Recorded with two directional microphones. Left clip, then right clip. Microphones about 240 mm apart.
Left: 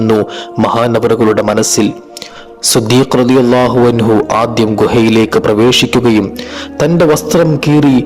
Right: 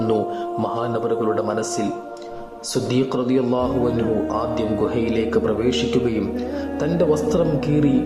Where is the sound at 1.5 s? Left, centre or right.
Left.